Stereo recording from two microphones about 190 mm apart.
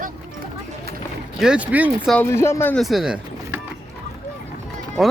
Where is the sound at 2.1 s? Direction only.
10° left (ahead or behind).